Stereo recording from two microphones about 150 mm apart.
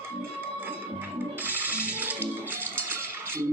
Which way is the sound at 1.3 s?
10° right (ahead or behind).